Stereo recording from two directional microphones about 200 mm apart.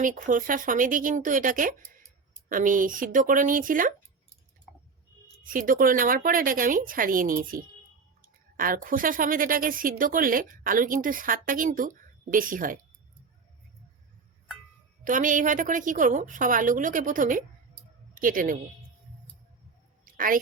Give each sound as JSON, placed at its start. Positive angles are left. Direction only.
{"t": 0.0, "sound": "speech", "side_deg": -40}
{"t": 5.4, "sound": "speech", "side_deg": -45}
{"t": 15.0, "sound": "a woman's voice", "side_deg": -40}
{"t": 20.1, "sound": "a sound", "side_deg": -45}